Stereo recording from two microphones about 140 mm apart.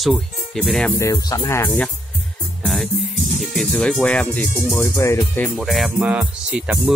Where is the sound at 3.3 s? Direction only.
Centre (ahead or behind).